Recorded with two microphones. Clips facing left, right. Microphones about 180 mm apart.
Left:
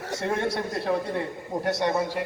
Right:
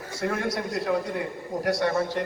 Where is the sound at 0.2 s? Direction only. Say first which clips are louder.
Even; 25° left (ahead or behind).